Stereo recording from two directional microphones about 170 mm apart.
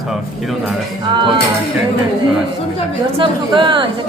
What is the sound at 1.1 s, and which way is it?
Music, 30° right (ahead or behind).